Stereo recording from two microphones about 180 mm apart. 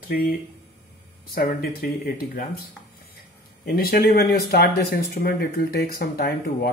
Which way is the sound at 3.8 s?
60° left (ahead or behind).